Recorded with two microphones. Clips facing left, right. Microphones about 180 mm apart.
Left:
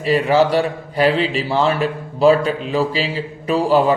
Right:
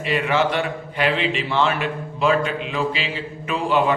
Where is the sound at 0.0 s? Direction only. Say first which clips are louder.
Left 6 dB; 35° left (ahead or behind).